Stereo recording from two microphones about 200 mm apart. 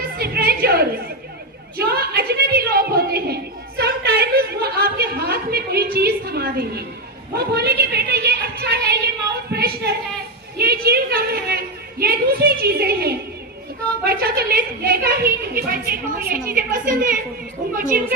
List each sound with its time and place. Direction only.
0.2 s music: 50° right (ahead or behind)
1.7 s a sound: 50° right (ahead or behind)
7.3 s a woman's voice: 55° right (ahead or behind)